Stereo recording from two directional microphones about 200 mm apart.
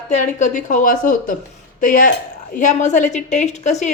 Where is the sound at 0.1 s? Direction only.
35° left (ahead or behind).